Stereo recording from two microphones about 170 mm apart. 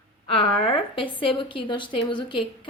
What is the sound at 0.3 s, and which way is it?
A woman's voice, 30° left (ahead or behind).